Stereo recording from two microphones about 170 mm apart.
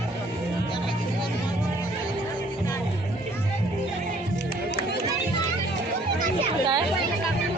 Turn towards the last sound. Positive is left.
turn(degrees=-25)  # may be behind; listen again after turning